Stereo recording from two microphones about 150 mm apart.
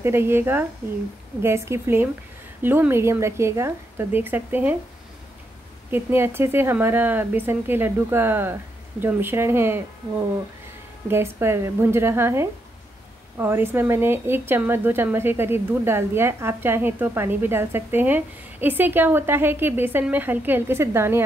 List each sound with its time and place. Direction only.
0.0 s speech: 15° right (ahead or behind)
5.9 s speech: 15° right (ahead or behind)
11.1 s speech: 15° right (ahead or behind)